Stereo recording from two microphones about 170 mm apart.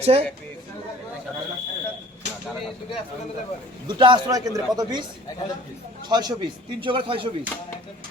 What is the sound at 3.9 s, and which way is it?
A man's voice, 25° right (ahead or behind).